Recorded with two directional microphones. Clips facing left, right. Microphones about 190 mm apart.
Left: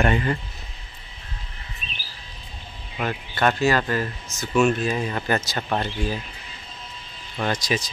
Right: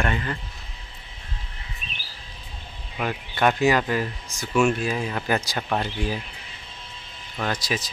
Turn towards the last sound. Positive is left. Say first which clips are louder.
# left 3 dB
turn(degrees=-5)  # may be behind; listen again after turning